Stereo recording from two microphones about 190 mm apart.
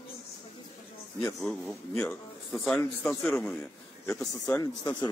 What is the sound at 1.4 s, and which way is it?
A man's voice, 5° left (ahead or behind).